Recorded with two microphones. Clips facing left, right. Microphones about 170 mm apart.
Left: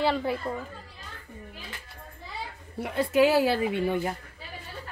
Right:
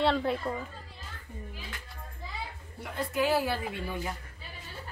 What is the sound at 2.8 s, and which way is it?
A woman's voice, 75° left (ahead or behind).